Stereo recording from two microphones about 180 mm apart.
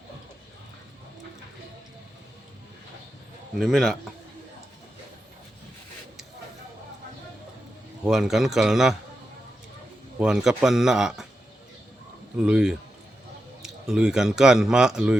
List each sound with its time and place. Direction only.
3.6 s speech: centre (ahead or behind)
8.0 s speech: centre (ahead or behind)
10.2 s speech: 5° right (ahead or behind)
12.4 s speech: 5° right (ahead or behind)